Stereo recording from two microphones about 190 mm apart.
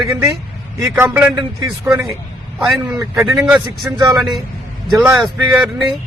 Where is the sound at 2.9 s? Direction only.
15° right (ahead or behind).